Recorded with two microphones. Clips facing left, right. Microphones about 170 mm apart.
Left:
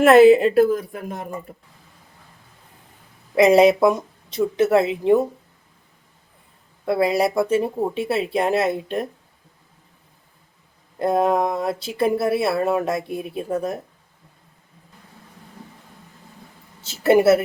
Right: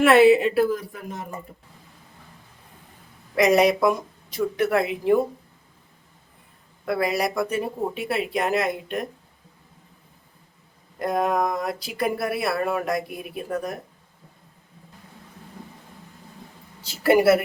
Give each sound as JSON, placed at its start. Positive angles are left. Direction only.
{"t": 0.0, "sound": "speech", "side_deg": 40}
{"t": 3.3, "sound": "speech", "side_deg": 25}
{"t": 6.8, "sound": "speech", "side_deg": 25}
{"t": 11.0, "sound": "speech", "side_deg": 30}
{"t": 16.8, "sound": "speech", "side_deg": 25}